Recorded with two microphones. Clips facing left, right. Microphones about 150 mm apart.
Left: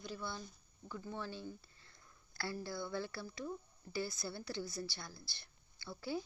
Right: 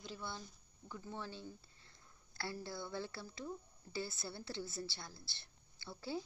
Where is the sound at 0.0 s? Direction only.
20° right (ahead or behind).